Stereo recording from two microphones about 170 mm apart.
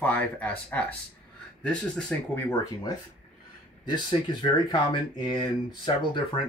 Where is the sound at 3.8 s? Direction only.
30° left (ahead or behind).